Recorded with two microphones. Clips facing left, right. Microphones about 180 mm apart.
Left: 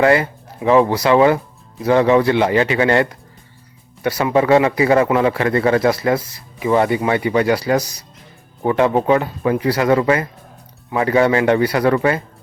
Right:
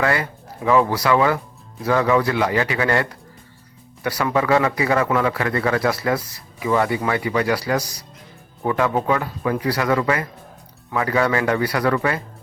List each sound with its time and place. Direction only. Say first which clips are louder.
0.0 s speech: left 7 dB; 25° left (ahead or behind)